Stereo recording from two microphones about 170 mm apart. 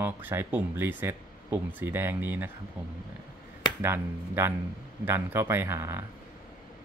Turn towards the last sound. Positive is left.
turn(degrees=-15)  # may be behind; listen again after turning